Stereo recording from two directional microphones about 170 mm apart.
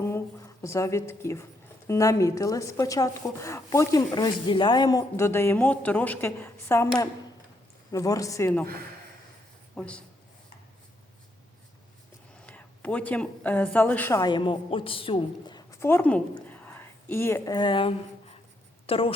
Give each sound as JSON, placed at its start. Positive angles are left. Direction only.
{"t": 0.0, "sound": "a sound", "side_deg": 15}
{"t": 1.9, "sound": "a woman's voice", "side_deg": 20}
{"t": 9.7, "sound": "speech", "side_deg": 5}
{"t": 12.5, "sound": "a woman's voice", "side_deg": 10}
{"t": 14.2, "sound": "a woman's voice", "side_deg": 25}
{"t": 16.5, "sound": "a sound", "side_deg": 10}
{"t": 18.9, "sound": "a woman's voice", "side_deg": 35}